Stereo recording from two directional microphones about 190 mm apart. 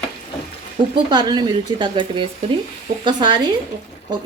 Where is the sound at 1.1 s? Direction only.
25° right (ahead or behind).